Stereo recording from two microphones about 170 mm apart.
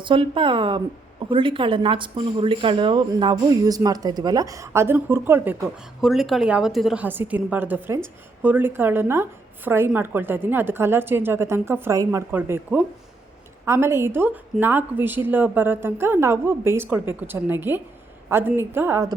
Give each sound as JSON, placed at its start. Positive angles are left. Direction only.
{"t": 0.0, "sound": "speech", "side_deg": -30}
{"t": 6.0, "sound": "a woman's voice", "side_deg": 0}